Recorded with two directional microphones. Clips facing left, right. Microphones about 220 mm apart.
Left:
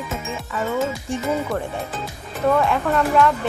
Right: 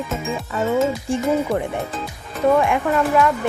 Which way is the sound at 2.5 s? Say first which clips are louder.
Right 1 dB; 15° right (ahead or behind).